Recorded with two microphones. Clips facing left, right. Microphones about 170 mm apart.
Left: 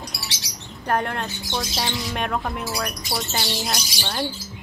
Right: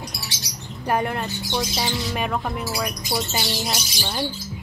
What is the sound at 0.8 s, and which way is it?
Speech, 5° right (ahead or behind).